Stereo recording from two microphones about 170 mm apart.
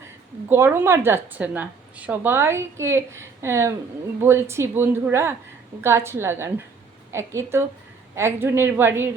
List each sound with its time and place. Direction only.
0.4 s a woman's voice: 15° right (ahead or behind)